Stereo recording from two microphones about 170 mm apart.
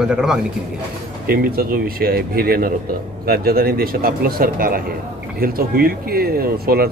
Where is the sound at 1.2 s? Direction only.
60° right (ahead or behind).